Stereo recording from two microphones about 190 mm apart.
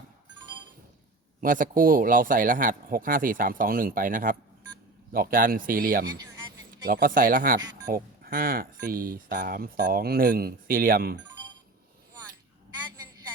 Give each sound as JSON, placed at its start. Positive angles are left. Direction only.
{"t": 1.4, "sound": "speech", "side_deg": -45}
{"t": 6.1, "sound": "a sound", "side_deg": -20}
{"t": 6.8, "sound": "speech", "side_deg": -50}